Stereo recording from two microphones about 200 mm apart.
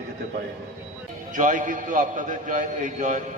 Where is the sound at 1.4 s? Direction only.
40° right (ahead or behind).